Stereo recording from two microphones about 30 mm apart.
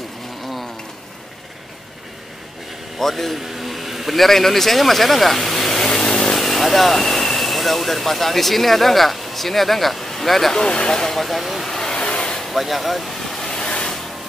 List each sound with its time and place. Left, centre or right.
3.0 s a man's voice: centre
3.3 s vehicle: centre; by 6.3 s left
6.3 s speech: centre
10.5 s speech: left
11.1 s speech: centre
11.6 s vehicle: centre
11.9 s vehicle: left
12.4 s vehicle: centre
13.6 s a sound: left